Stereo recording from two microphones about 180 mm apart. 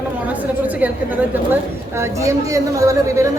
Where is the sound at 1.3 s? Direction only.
10° right (ahead or behind).